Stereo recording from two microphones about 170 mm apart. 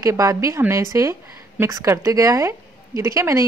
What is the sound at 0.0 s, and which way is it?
A woman's voice, 20° right (ahead or behind).